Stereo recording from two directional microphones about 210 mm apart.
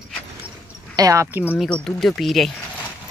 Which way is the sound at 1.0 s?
15° right (ahead or behind).